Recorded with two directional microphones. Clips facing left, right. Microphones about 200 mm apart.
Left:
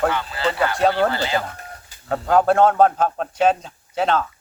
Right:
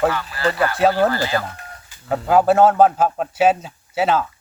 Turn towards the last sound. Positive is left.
turn(degrees=-5)  # may be behind; listen again after turning